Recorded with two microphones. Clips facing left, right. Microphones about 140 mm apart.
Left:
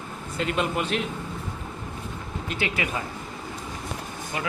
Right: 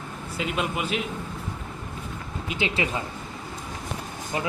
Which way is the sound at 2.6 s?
25° right (ahead or behind).